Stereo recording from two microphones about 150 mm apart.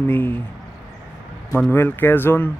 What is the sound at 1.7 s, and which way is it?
Speech, 15° left (ahead or behind).